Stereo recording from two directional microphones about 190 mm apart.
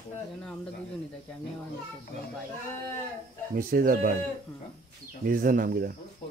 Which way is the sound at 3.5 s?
50° right (ahead or behind).